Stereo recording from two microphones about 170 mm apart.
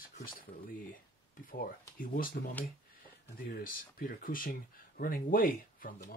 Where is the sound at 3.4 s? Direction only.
60° left (ahead or behind).